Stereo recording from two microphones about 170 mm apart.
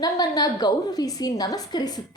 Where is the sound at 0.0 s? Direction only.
20° left (ahead or behind).